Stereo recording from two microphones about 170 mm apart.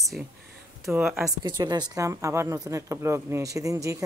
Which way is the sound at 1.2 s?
25° right (ahead or behind).